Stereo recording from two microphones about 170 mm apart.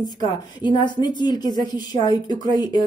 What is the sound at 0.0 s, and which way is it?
A woman's voice, 25° left (ahead or behind).